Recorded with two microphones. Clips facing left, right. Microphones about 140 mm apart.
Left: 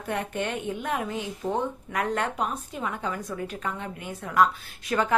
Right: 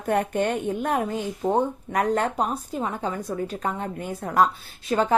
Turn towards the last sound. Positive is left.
turn(degrees=-25)  # may be behind; listen again after turning